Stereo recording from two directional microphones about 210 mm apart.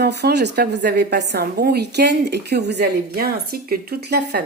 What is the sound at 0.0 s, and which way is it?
A woman's voice, 50° right (ahead or behind).